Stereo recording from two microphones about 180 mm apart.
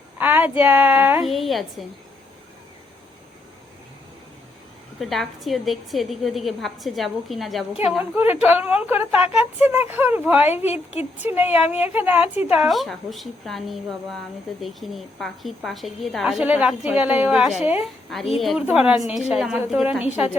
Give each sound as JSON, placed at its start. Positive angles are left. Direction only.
{"t": 0.2, "sound": "a sound", "side_deg": -10}
{"t": 0.6, "sound": "speech", "side_deg": -10}
{"t": 4.9, "sound": "a woman's voice", "side_deg": 0}